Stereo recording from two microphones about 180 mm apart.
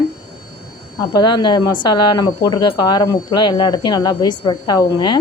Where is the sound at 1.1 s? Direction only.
25° left (ahead or behind).